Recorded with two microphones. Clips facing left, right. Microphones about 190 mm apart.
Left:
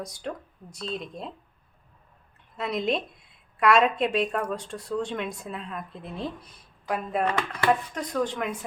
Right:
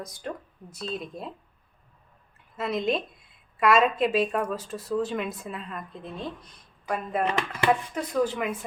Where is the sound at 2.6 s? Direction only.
Centre (ahead or behind).